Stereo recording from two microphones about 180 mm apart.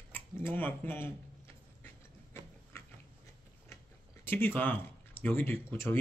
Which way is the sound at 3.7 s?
15° left (ahead or behind).